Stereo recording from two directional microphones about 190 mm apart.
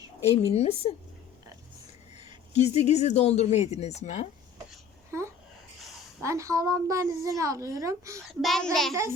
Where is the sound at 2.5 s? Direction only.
35° left (ahead or behind).